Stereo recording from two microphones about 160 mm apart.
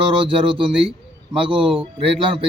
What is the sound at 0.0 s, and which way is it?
Speech, 35° right (ahead or behind).